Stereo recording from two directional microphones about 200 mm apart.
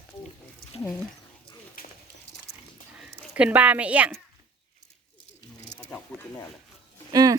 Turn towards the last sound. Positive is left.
turn(degrees=-20)  # may be behind; listen again after turning